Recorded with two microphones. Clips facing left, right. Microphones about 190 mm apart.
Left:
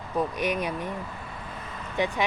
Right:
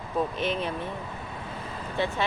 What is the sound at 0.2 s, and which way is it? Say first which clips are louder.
Speech: left 1 dB; 10° left (ahead or behind).